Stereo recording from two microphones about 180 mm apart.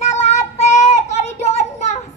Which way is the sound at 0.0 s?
40° left (ahead or behind).